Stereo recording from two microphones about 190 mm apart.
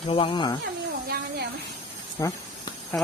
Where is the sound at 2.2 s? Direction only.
20° left (ahead or behind).